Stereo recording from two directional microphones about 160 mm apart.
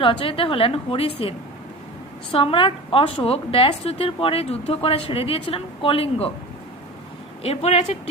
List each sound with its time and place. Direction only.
0.0 s a woman's voice: 35° left (ahead or behind)
2.3 s a woman's voice: 30° left (ahead or behind)
7.4 s a woman's voice: 40° left (ahead or behind)